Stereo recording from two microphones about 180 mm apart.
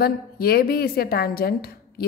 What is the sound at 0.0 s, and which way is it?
A woman's voice, 60° left (ahead or behind).